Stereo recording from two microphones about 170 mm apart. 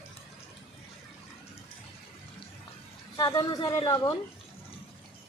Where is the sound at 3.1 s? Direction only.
20° left (ahead or behind).